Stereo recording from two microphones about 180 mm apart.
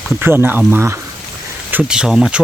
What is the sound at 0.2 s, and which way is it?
Speech, 10° right (ahead or behind).